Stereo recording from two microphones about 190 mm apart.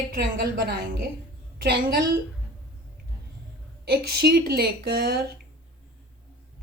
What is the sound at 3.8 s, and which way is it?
A woman's voice, 55° right (ahead or behind).